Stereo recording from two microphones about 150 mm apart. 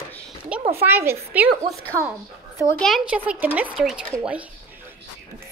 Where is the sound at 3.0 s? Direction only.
10° right (ahead or behind).